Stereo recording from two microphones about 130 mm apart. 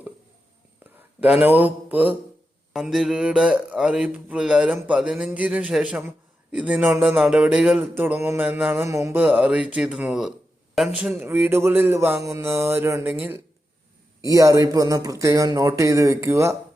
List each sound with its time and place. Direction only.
1.2 s speech: 10° right (ahead or behind)